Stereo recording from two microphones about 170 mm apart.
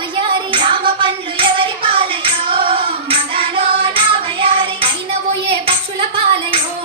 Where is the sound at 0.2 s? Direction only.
30° right (ahead or behind).